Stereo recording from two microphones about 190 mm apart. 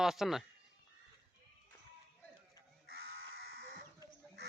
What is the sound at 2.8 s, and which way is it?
Sheep, 55° right (ahead or behind).